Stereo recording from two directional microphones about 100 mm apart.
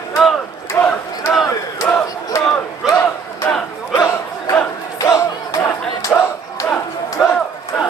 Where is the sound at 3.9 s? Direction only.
30° left (ahead or behind).